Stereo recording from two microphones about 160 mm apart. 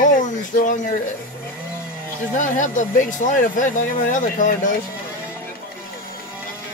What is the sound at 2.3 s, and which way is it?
Speech, 55° left (ahead or behind).